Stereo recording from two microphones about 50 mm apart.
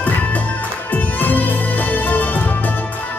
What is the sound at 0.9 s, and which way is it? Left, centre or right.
Music, left.